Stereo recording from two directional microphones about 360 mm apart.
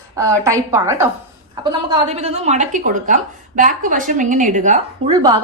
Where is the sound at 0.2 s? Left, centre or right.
Centre.